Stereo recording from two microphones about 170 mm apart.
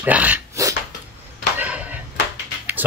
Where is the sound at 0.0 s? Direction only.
10° right (ahead or behind).